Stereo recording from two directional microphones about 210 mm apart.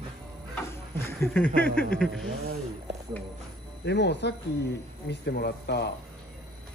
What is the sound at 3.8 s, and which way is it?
Speech, 55° left (ahead or behind).